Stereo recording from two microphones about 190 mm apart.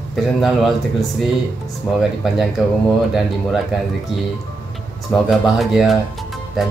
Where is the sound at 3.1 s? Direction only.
Centre (ahead or behind).